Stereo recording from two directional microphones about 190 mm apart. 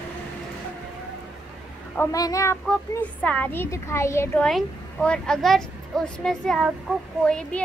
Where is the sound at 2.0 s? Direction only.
15° left (ahead or behind).